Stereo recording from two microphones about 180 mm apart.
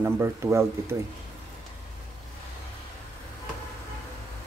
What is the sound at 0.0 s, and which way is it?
Speech, 15° right (ahead or behind).